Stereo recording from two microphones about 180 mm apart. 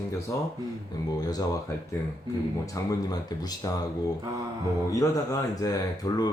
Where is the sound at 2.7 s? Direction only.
20° left (ahead or behind).